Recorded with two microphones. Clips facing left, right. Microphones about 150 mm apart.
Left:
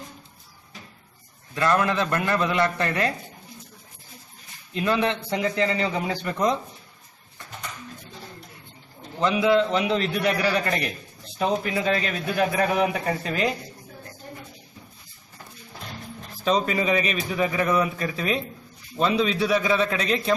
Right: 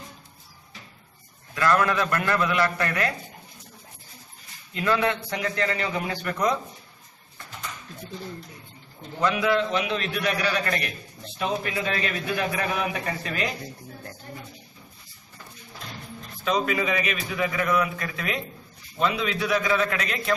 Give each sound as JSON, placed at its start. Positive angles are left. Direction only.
{"t": 1.5, "sound": "a man's voice", "side_deg": 20}
{"t": 4.7, "sound": "a man's voice", "side_deg": 20}
{"t": 9.2, "sound": "a man's voice", "side_deg": 20}
{"t": 16.4, "sound": "a man's voice", "side_deg": 30}